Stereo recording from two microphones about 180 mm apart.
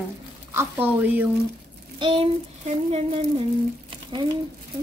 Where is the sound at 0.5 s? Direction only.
10° right (ahead or behind).